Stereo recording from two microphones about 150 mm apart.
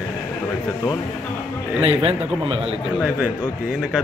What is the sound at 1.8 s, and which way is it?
Speech, 40° right (ahead or behind).